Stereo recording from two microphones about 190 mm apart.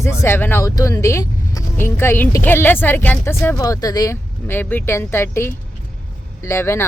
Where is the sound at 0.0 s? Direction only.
15° left (ahead or behind).